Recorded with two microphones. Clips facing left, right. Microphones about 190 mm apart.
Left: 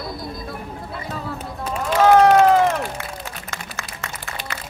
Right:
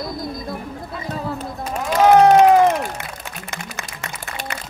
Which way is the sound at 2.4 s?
15° right (ahead or behind).